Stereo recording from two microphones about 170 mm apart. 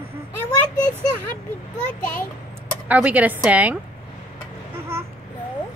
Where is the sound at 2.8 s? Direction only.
10° right (ahead or behind).